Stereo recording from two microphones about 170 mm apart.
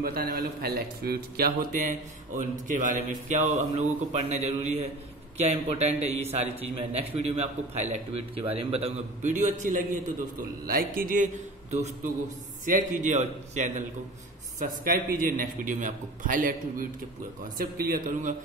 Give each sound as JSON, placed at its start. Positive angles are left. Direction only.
{"t": 0.0, "sound": "a man's voice", "side_deg": -65}
{"t": 11.7, "sound": "a man's voice", "side_deg": -40}